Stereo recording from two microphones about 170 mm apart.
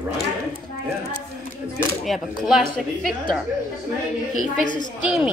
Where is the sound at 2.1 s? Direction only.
Centre (ahead or behind).